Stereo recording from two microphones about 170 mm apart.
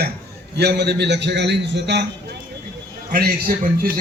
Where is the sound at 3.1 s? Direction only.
60° right (ahead or behind).